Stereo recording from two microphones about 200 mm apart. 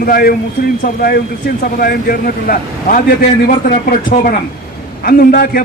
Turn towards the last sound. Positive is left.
turn(degrees=50)  # may be behind; listen again after turning